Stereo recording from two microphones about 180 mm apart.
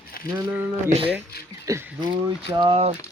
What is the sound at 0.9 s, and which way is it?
Speech, 35° right (ahead or behind).